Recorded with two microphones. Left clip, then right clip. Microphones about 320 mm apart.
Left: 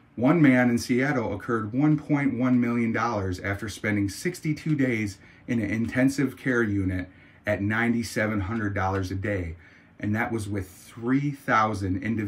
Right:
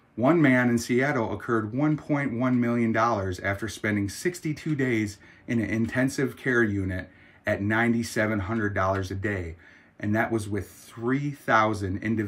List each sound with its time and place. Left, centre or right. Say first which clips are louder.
0.2 s speech: even; centre